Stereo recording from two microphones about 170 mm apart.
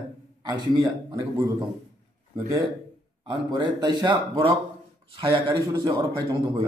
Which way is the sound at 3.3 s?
30° right (ahead or behind).